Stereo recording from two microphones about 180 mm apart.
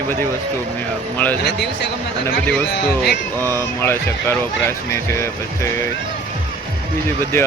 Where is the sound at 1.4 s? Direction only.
65° left (ahead or behind).